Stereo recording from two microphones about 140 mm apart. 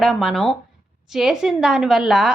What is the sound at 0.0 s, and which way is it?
A woman's voice, centre (ahead or behind).